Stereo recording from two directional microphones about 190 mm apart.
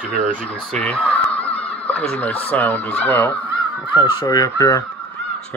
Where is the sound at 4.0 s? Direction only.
20° left (ahead or behind).